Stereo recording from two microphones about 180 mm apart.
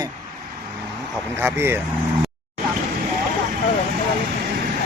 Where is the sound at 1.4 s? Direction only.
15° right (ahead or behind).